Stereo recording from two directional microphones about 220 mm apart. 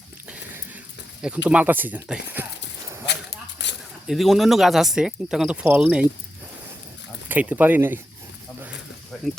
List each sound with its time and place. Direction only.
1.5 s speech: 5° right (ahead or behind)
3.1 s a sound: 50° left (ahead or behind)
4.0 s speech: centre (ahead or behind)
7.3 s speech: 5° right (ahead or behind)